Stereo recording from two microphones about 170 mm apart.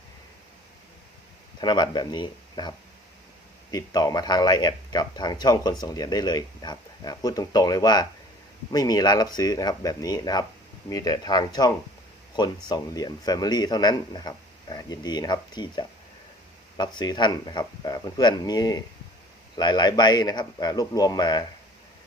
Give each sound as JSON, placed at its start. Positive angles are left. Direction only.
{"t": 1.6, "sound": "a man's voice", "side_deg": 25}